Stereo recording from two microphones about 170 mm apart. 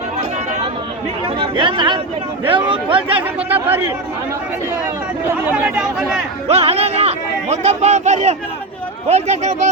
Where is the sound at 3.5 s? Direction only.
10° right (ahead or behind).